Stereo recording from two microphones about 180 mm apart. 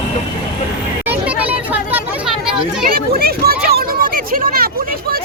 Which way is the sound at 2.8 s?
55° right (ahead or behind).